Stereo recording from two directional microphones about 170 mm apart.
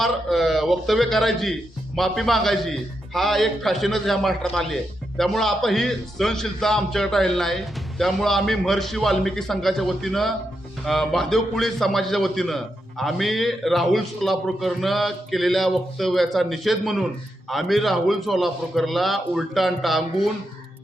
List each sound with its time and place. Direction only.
0.0 s a man's voice: centre (ahead or behind)